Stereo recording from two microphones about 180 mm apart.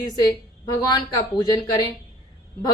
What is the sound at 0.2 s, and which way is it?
A woman's voice, 25° left (ahead or behind).